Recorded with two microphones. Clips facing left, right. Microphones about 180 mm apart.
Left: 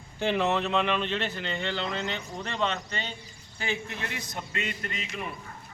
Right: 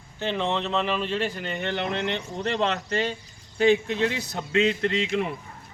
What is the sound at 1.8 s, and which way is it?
Speech, 65° right (ahead or behind).